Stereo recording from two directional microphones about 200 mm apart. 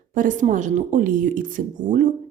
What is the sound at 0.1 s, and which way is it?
A woman's voice, 40° right (ahead or behind).